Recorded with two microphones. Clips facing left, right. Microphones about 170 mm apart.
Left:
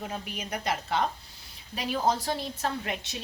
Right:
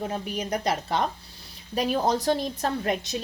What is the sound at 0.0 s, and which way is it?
A woman's voice, 35° right (ahead or behind).